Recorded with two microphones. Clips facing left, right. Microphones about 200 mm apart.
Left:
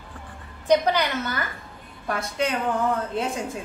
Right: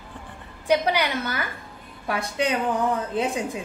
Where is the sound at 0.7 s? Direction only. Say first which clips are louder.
Left 1 dB; 10° right (ahead or behind).